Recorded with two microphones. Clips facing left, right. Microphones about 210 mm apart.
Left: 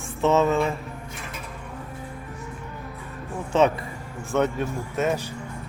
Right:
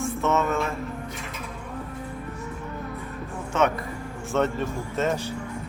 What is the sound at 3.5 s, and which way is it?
Speech, 30° left (ahead or behind).